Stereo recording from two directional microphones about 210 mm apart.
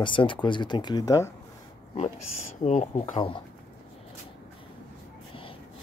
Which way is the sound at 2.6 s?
35° left (ahead or behind).